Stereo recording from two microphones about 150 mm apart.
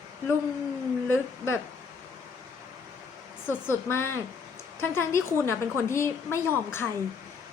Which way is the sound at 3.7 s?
15° left (ahead or behind).